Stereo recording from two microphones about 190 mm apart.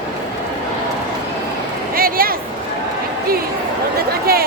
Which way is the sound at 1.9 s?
50° right (ahead or behind).